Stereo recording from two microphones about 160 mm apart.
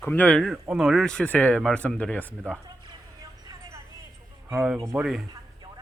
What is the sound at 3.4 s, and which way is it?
Vehicle, 20° right (ahead or behind).